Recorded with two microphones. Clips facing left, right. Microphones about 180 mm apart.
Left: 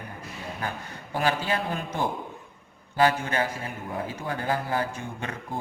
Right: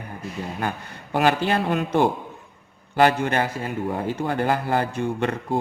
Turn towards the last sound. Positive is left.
turn(degrees=-70)  # may be behind; listen again after turning